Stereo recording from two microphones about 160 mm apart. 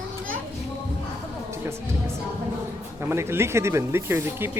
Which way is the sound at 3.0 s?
15° right (ahead or behind).